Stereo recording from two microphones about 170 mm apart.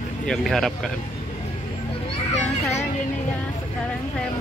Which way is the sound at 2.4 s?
40° left (ahead or behind).